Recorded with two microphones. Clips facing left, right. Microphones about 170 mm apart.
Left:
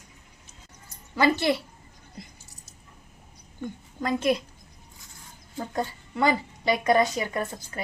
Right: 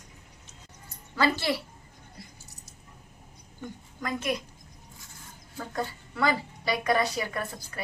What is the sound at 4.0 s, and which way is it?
Speech, 30° left (ahead or behind).